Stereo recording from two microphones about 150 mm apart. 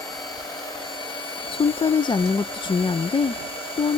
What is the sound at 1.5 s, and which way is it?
Speech, 35° left (ahead or behind).